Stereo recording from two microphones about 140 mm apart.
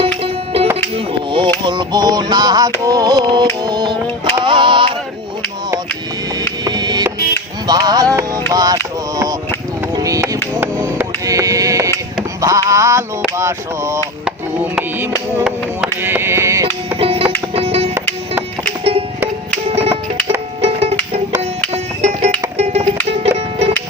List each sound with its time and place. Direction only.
0.2 s music: 45° right (ahead or behind)
0.9 s a sound: 35° right (ahead or behind)
1.6 s music: 35° right (ahead or behind)
6.7 s music: 30° right (ahead or behind)
7.7 s a sound: 30° right (ahead or behind)
8.1 s music: 25° right (ahead or behind)
9.9 s a sound: 25° right (ahead or behind)
10.6 s music: 20° right (ahead or behind)
12.4 s a sound: 25° right (ahead or behind)
14.3 s music: 10° right (ahead or behind)
17.0 s music: 40° right (ahead or behind)
19.7 s music: 45° right (ahead or behind)